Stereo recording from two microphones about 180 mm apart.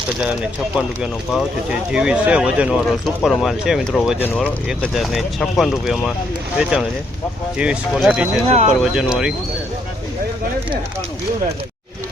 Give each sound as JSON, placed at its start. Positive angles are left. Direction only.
{"t": 1.0, "sound": "speech", "side_deg": 0}
{"t": 8.4, "sound": "speech", "side_deg": -35}
{"t": 8.7, "sound": "speech", "side_deg": -5}